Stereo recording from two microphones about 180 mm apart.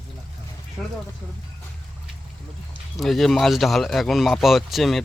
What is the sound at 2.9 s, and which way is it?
Speech, centre (ahead or behind).